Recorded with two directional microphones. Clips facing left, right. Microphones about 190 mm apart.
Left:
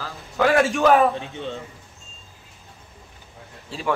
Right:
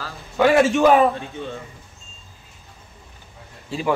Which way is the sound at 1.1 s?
20° left (ahead or behind).